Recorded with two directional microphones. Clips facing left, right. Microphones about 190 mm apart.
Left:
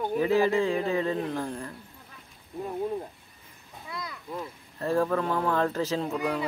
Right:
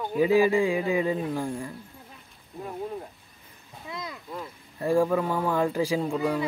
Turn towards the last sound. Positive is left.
turn(degrees=-10)  # may be behind; listen again after turning